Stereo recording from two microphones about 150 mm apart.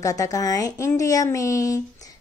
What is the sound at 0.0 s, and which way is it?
A woman's voice, 25° left (ahead or behind).